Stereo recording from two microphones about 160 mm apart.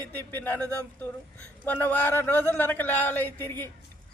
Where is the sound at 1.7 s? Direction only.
10° left (ahead or behind).